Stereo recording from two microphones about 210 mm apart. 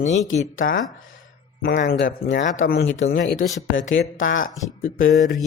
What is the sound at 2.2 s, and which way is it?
Speech, 60° left (ahead or behind).